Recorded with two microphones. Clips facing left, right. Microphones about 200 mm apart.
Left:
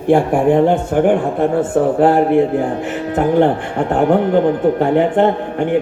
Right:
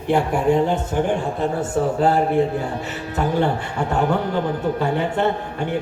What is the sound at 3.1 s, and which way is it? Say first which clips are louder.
Music: left 7 dB; 55° left (ahead or behind).